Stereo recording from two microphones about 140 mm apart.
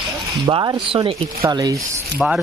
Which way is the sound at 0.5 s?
30° right (ahead or behind).